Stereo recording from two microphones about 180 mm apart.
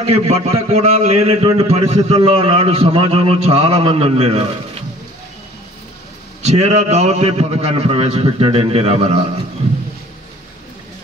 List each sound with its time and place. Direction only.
0.1 s a man's voice: 35° right (ahead or behind)
6.4 s a man's voice: 40° right (ahead or behind)